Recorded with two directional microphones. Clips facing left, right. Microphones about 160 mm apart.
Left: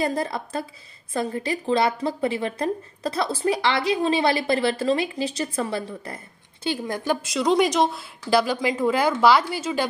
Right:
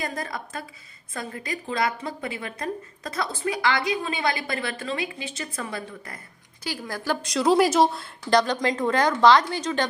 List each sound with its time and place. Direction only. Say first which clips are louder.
0.0 s a woman's voice: left 7 dB; 30° left (ahead or behind)
7.2 s speech: right 2 dB; centre (ahead or behind)